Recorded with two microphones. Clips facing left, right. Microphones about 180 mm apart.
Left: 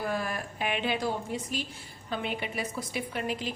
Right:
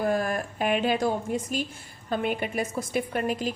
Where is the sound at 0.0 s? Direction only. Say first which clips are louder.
Right 6 dB; 45° right (ahead or behind).